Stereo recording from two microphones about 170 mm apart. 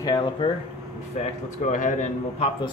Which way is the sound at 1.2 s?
45° left (ahead or behind).